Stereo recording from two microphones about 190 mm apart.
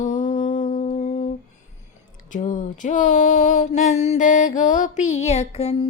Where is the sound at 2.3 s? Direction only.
40° left (ahead or behind).